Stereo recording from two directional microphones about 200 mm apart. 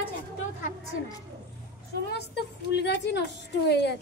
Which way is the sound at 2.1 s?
55° left (ahead or behind).